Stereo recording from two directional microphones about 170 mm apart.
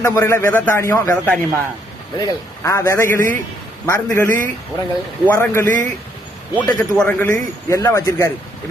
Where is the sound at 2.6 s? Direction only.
15° left (ahead or behind).